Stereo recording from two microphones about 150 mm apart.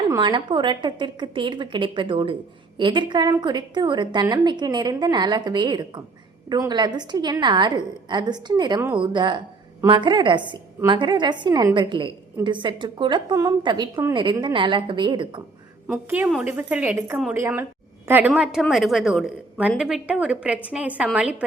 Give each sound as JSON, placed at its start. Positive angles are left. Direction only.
{"t": 0.2, "sound": "a woman's voice", "side_deg": -30}
{"t": 15.9, "sound": "a woman's voice", "side_deg": -10}